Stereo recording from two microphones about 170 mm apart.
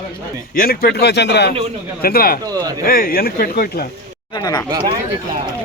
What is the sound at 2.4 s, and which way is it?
Speech, 20° right (ahead or behind).